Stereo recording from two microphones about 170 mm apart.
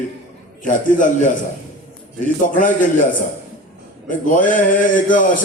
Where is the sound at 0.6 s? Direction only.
50° left (ahead or behind).